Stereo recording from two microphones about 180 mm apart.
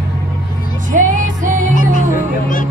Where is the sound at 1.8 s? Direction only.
45° left (ahead or behind).